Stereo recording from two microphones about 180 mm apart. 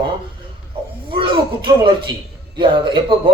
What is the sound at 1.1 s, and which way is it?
Speech, 25° right (ahead or behind).